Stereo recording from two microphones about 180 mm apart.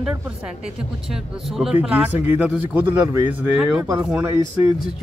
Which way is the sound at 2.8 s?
25° right (ahead or behind).